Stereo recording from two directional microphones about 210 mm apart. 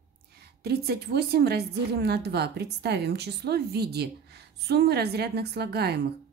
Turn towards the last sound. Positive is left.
turn(degrees=-50)  # may be behind; listen again after turning